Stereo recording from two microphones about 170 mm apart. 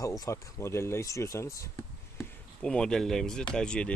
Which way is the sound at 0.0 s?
20° left (ahead or behind).